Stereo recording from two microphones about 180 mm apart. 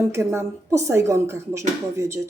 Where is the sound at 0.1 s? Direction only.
15° right (ahead or behind).